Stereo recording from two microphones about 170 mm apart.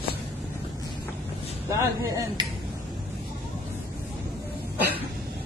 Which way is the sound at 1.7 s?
20° right (ahead or behind).